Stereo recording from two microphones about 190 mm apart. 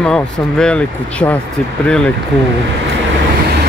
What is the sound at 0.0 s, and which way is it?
Speech, 5° left (ahead or behind).